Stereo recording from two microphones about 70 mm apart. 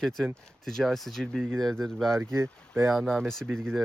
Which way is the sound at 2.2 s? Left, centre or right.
Right.